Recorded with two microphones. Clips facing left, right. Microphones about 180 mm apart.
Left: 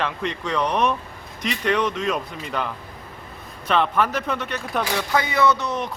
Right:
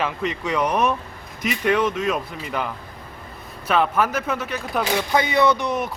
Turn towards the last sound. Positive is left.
turn(degrees=-10)  # may be behind; listen again after turning